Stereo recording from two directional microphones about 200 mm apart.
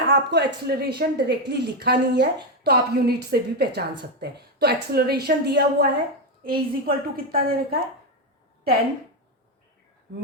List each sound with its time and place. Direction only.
0.1 s a woman's voice: 55° right (ahead or behind)